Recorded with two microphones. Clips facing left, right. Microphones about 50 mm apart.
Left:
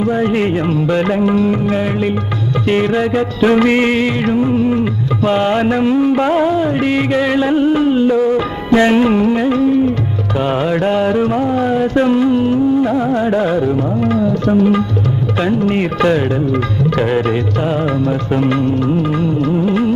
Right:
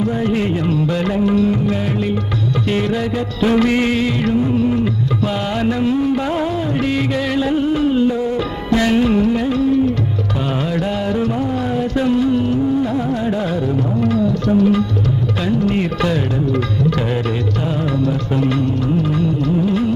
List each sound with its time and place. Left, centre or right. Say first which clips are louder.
0.0 s music: left 3 dB; left